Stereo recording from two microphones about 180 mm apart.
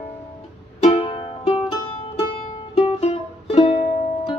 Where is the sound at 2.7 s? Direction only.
35° left (ahead or behind).